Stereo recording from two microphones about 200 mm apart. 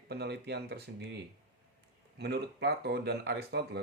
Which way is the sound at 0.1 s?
55° right (ahead or behind).